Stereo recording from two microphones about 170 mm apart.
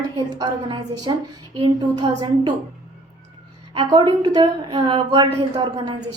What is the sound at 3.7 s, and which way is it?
A woman's voice, 30° right (ahead or behind).